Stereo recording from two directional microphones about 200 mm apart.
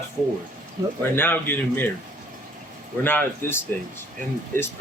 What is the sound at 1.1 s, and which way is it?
Speech, 10° left (ahead or behind).